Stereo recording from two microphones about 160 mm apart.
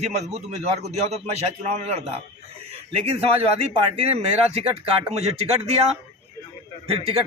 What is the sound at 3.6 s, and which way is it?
Speech, 40° right (ahead or behind).